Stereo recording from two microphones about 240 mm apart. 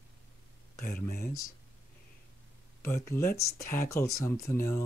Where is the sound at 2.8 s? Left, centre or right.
Centre.